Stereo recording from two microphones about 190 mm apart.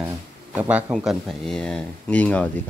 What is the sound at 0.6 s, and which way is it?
Speech, 5° right (ahead or behind).